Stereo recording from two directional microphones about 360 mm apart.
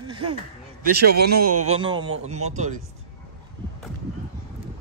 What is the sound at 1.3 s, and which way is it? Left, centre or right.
Speech, right.